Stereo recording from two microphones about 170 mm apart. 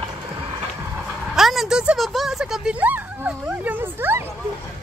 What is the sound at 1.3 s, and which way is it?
Speech, centre (ahead or behind).